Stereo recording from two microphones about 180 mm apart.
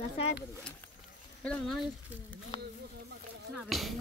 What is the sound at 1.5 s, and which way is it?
Speech, centre (ahead or behind).